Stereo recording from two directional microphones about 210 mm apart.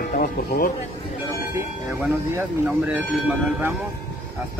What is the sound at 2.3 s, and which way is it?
Speech, 10° right (ahead or behind).